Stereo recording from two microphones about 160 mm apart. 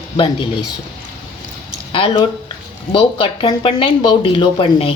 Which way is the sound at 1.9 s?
35° left (ahead or behind).